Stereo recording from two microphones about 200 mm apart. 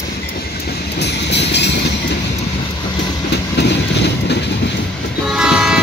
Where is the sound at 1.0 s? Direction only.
60° left (ahead or behind).